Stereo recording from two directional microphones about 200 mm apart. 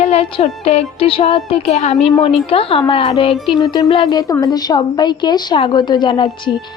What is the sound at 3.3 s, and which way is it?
Music, centre (ahead or behind).